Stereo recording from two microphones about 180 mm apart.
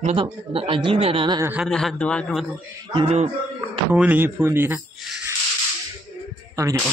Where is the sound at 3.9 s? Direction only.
10° right (ahead or behind).